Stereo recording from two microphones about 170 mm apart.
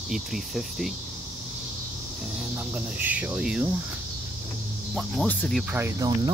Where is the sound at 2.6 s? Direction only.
10° right (ahead or behind).